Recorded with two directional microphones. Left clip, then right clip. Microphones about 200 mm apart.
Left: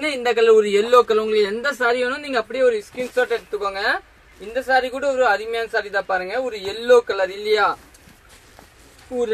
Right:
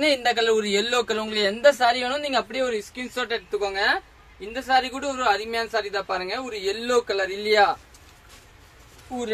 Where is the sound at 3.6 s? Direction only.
15° right (ahead or behind).